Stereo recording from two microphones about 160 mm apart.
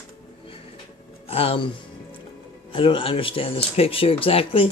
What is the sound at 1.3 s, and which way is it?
Speech, 40° left (ahead or behind).